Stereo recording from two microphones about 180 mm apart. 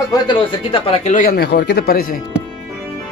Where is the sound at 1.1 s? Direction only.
55° left (ahead or behind).